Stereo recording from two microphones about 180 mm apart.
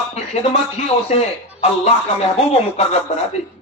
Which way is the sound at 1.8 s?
35° left (ahead or behind).